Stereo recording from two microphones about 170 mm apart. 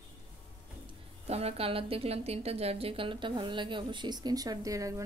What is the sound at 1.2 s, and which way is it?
A woman's voice, 35° right (ahead or behind).